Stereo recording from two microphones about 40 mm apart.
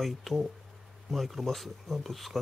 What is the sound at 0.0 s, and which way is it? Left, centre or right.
Speech, centre.